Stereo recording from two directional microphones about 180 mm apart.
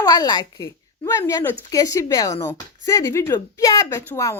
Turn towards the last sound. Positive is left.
turn(degrees=15)  # may be behind; listen again after turning